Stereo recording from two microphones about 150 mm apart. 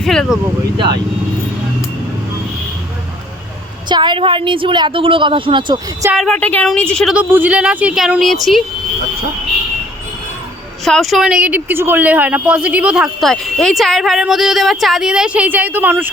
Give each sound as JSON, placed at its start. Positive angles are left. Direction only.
{"t": 0.0, "sound": "a woman's voice", "side_deg": 0}
{"t": 3.8, "sound": "a woman's voice", "side_deg": -30}
{"t": 6.1, "sound": "a woman's voice", "side_deg": 5}
{"t": 7.1, "sound": "a woman's voice", "side_deg": -10}
{"t": 10.8, "sound": "a woman's voice", "side_deg": 0}